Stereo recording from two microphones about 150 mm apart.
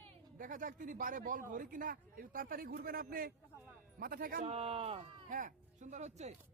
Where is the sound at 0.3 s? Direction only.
65° right (ahead or behind).